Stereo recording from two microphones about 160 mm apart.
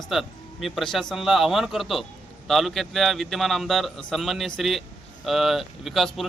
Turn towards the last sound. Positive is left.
turn(degrees=0)  # may be behind; listen again after turning